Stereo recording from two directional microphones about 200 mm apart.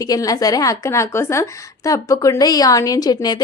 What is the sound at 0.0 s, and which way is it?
Speech, 15° left (ahead or behind).